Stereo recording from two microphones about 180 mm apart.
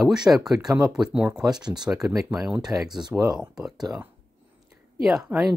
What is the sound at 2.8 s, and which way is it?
Speech, 20° right (ahead or behind).